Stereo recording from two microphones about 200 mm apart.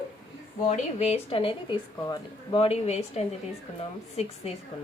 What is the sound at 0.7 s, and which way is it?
A woman's voice, 35° left (ahead or behind).